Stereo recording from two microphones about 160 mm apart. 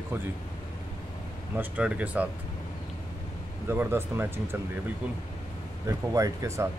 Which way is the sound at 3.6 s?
15° right (ahead or behind).